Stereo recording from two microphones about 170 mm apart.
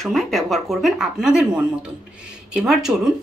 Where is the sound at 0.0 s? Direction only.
Centre (ahead or behind).